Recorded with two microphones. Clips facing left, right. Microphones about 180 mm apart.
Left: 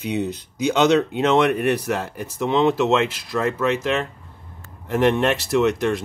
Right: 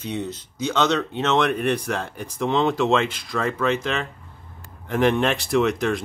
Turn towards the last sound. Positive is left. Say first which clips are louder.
# left 2 dB
turn(degrees=0)  # may be behind; listen again after turning